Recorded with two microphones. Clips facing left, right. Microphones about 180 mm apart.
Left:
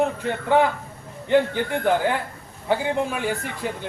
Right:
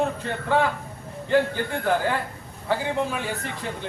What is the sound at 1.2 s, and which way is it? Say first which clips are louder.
A man's voice: left 2 dB; 20° left (ahead or behind).